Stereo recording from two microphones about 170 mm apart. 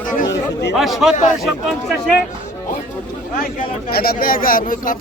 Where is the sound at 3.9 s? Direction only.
65° left (ahead or behind).